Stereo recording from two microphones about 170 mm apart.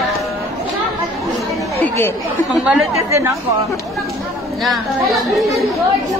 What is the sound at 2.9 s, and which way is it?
Speech, 15° right (ahead or behind).